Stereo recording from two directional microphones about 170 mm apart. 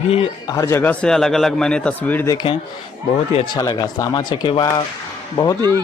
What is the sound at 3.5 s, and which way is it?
A man's voice, 20° left (ahead or behind).